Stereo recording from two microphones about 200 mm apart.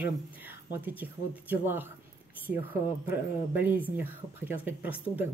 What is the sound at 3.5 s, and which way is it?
Speech, 10° right (ahead or behind).